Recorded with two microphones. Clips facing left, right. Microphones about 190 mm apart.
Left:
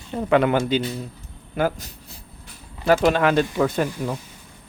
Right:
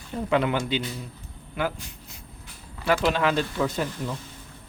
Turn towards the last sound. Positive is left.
turn(degrees=55)  # may be behind; listen again after turning